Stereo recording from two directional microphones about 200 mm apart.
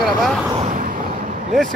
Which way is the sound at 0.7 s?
40° right (ahead or behind).